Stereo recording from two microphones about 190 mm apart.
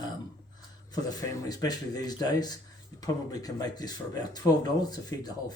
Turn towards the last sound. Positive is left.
turn(degrees=20)  # may be behind; listen again after turning